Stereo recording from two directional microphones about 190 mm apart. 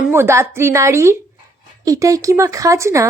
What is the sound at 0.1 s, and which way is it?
A woman's voice, 15° right (ahead or behind).